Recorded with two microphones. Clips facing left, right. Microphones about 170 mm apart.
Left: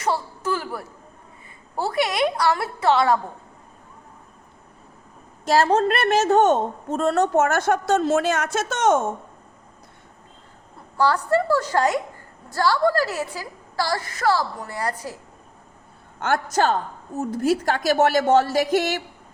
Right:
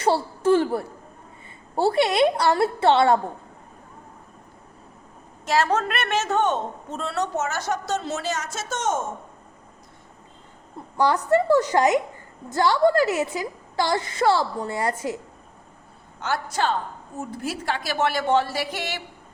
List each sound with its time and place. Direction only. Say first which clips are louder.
0.0 s a woman's voice: right 4 dB; 30° right (ahead or behind)
5.5 s a woman's voice: left 4 dB; 30° left (ahead or behind); by 9.0 s 65° left (ahead or behind)
10.9 s a woman's voice: even; 20° right (ahead or behind)
16.2 s a woman's voice: left 4 dB; 50° left (ahead or behind)